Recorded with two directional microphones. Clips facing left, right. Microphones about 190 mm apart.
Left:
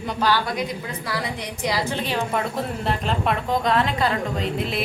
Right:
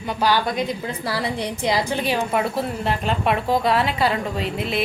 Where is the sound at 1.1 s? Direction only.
30° right (ahead or behind).